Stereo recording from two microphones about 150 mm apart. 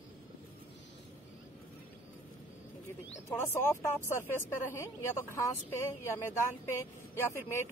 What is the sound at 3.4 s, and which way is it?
Speech, 15° left (ahead or behind).